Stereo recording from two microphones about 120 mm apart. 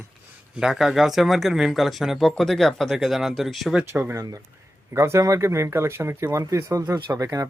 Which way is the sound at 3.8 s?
20° right (ahead or behind).